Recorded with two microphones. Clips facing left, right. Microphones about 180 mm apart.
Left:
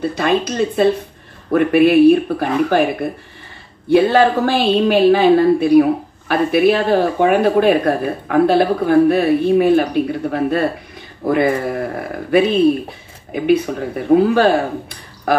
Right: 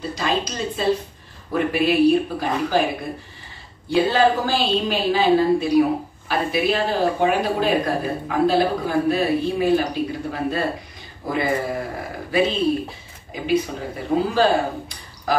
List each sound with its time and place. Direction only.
0.0 s a woman's voice: 60° left (ahead or behind)